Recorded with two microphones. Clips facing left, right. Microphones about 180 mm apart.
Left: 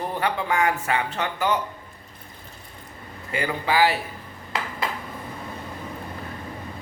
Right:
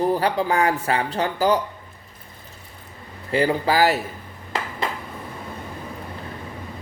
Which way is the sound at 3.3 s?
35° right (ahead or behind).